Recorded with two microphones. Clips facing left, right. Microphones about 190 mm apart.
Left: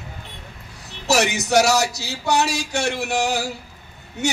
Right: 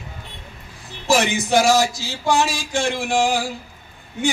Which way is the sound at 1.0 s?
75° left (ahead or behind).